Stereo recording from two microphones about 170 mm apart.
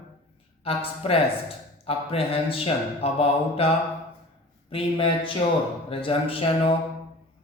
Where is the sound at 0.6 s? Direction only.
35° left (ahead or behind).